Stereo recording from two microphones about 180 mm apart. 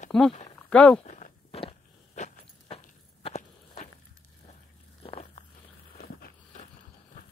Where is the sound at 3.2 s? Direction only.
40° left (ahead or behind).